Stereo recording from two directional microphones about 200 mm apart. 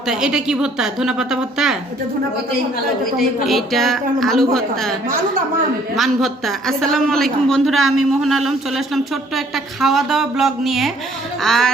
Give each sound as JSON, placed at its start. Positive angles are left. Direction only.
{"t": 0.1, "sound": "a woman's voice", "side_deg": -5}
{"t": 3.2, "sound": "a woman's voice", "side_deg": 0}
{"t": 6.0, "sound": "a woman's voice", "side_deg": 0}
{"t": 7.8, "sound": "a man's voice", "side_deg": -90}
{"t": 8.2, "sound": "a woman's voice", "side_deg": 0}
{"t": 9.8, "sound": "a woman's voice", "side_deg": 0}